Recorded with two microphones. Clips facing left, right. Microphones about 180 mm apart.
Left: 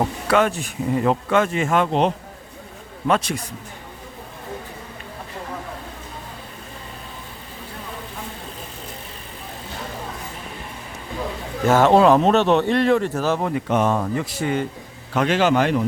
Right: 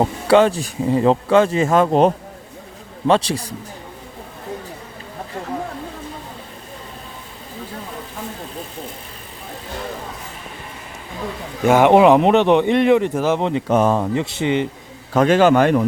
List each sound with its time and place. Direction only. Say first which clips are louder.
0.0 s speech: right 5 dB; 30° right (ahead or behind)
3.1 s speech: right 4 dB; 30° right (ahead or behind)
11.6 s a man's voice: right 3 dB; 15° right (ahead or behind)
13.7 s speech: right 4 dB; 40° right (ahead or behind)
14.0 s speech: right 3 dB; 20° right (ahead or behind)
15.1 s a man's voice: right 5 dB; 45° right (ahead or behind)